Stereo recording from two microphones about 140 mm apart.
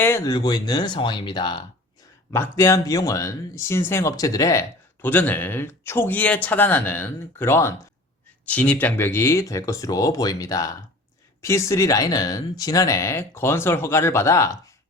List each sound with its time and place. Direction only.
0.3 s speech: 30° left (ahead or behind)
2.3 s speech: 20° left (ahead or behind)
5.0 s speech: 15° left (ahead or behind)